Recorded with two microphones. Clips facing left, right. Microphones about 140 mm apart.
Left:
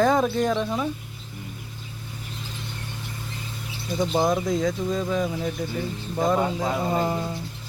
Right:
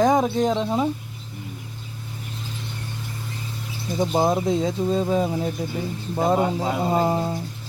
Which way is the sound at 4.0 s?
25° right (ahead or behind).